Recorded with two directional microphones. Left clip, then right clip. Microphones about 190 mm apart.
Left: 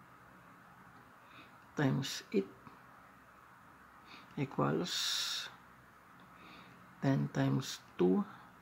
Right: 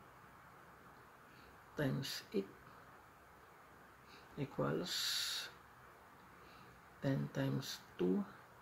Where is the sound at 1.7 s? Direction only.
35° left (ahead or behind).